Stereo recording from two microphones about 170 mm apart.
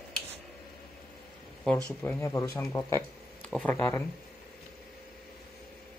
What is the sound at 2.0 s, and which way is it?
Speech, 15° left (ahead or behind).